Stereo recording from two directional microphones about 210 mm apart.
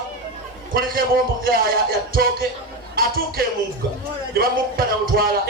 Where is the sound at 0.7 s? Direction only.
45° right (ahead or behind).